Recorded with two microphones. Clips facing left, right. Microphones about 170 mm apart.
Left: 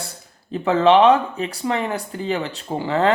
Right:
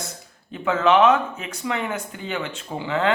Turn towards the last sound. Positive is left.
turn(degrees=40)  # may be behind; listen again after turning